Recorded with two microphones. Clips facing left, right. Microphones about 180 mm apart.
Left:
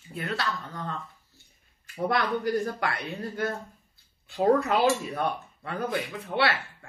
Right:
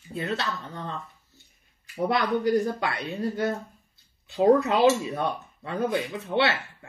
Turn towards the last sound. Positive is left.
turn(degrees=-25)  # may be behind; listen again after turning